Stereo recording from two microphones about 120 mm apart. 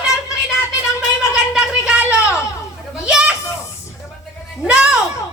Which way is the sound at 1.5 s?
5° right (ahead or behind).